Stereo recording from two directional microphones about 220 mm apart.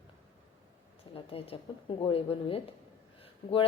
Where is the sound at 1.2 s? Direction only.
25° left (ahead or behind).